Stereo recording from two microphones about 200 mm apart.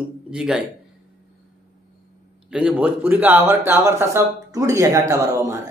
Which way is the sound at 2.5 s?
5° right (ahead or behind).